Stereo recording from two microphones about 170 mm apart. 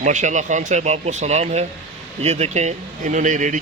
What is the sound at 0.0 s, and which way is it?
Speech, 45° right (ahead or behind).